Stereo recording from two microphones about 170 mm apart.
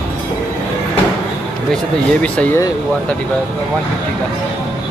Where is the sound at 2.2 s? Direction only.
10° left (ahead or behind).